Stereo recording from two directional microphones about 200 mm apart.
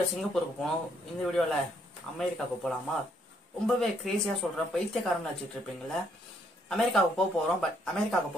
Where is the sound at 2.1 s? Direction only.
Centre (ahead or behind).